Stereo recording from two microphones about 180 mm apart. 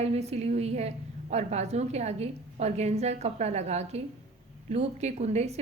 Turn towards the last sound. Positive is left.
turn(degrees=-35)  # may be behind; listen again after turning